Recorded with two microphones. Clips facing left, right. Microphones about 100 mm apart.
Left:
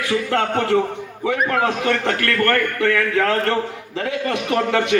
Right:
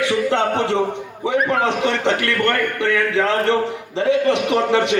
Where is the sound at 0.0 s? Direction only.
20° right (ahead or behind).